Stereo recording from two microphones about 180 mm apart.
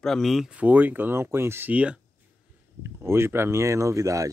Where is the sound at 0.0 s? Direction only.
Centre (ahead or behind).